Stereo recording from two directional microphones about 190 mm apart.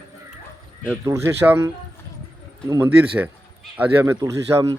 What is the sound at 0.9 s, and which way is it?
A man's voice, 15° right (ahead or behind).